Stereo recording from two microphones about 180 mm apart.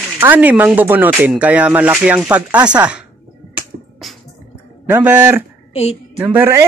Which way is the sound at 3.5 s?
Centre (ahead or behind).